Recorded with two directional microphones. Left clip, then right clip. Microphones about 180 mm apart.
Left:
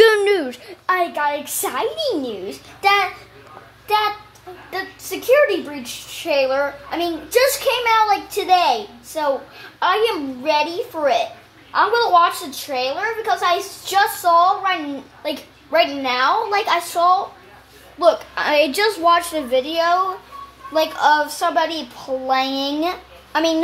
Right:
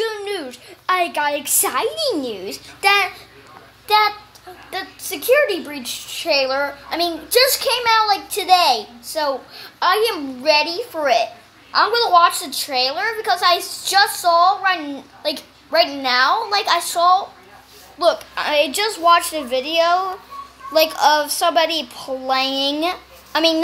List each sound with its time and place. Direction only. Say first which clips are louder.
0.0 s a sound: left 11 dB; 55° left (ahead or behind)
0.8 s a sound: even; centre (ahead or behind)
1.7 s a woman's voice: even; centre (ahead or behind)
4.6 s a woman's voice: even; centre (ahead or behind)
17.9 s a woman's voice: left 2 dB; 20° left (ahead or behind)
19.3 s a woman's voice: even; 5° left (ahead or behind)
20.7 s a child's voice: right 1 dB; 10° right (ahead or behind)
22.2 s a child's voice: right 1 dB; 5° left (ahead or behind)